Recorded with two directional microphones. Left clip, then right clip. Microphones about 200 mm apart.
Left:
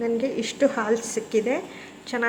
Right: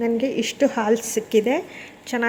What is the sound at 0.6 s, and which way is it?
A woman's voice, 35° right (ahead or behind).